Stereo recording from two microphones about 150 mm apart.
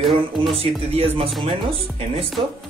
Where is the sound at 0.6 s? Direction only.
40° right (ahead or behind).